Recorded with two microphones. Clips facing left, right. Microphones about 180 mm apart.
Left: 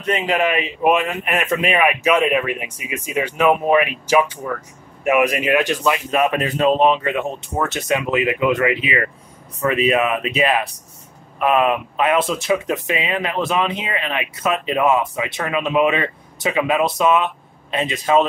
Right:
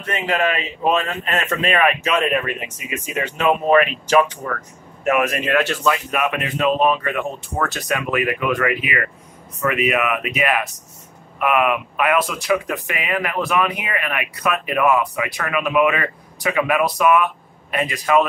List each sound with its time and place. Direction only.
0.0 s a man's voice: 15° left (ahead or behind)
6.2 s speech: 35° left (ahead or behind)
6.9 s speech: 20° left (ahead or behind)